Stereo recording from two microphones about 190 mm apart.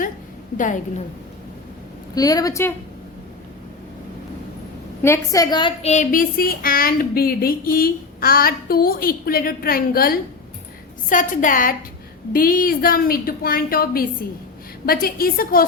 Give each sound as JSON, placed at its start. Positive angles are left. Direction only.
{"t": 0.5, "sound": "a woman's voice", "side_deg": 40}
{"t": 2.1, "sound": "a woman's voice", "side_deg": 20}
{"t": 5.0, "sound": "a woman's voice", "side_deg": 15}